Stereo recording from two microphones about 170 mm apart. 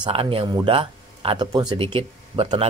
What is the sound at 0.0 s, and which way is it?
Speech, 30° right (ahead or behind).